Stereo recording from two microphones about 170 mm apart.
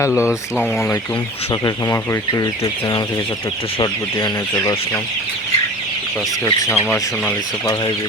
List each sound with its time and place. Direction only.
0.2 s speech: 5° right (ahead or behind)
0.6 s speech: 15° left (ahead or behind)
6.4 s speech: 10° left (ahead or behind)